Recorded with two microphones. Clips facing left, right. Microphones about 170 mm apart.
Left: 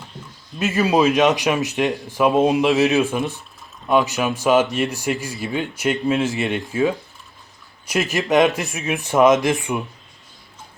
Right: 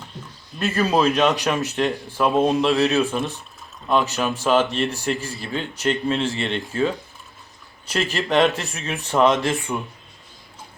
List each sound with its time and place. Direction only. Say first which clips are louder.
0.6 s speech: left 2 dB; 10° left (ahead or behind)